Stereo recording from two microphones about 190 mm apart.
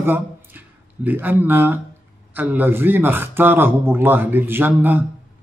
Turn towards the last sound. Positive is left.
turn(degrees=-10)  # may be behind; listen again after turning